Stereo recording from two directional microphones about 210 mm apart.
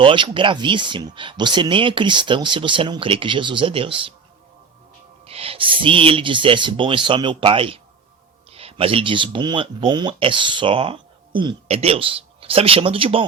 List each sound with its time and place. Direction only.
0.0 s speech: 25° right (ahead or behind)
5.2 s speech: 25° right (ahead or behind)